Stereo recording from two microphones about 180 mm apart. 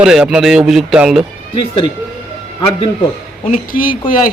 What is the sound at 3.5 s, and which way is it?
Speech, 50° left (ahead or behind).